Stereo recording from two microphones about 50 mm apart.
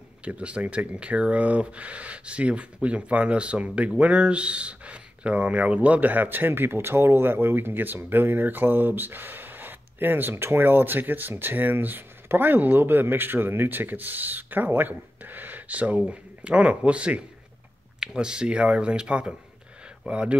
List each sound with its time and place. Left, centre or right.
0.2 s speech: right
18.0 s speech: centre